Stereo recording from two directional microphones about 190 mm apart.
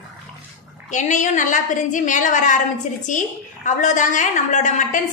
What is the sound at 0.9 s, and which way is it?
A woman's voice, 40° left (ahead or behind).